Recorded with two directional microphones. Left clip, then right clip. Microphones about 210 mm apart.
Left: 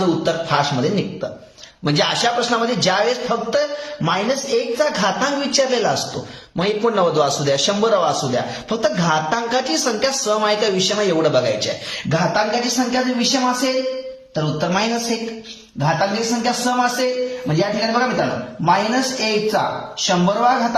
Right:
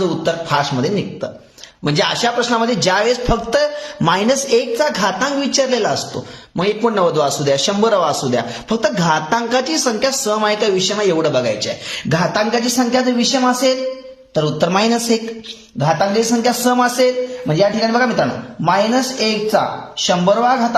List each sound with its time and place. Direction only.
0.2 s a man's voice: 25° right (ahead or behind)
12.0 s a man's voice: 45° right (ahead or behind)